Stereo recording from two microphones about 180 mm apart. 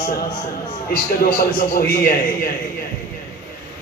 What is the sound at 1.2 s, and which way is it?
Speech, 55° left (ahead or behind).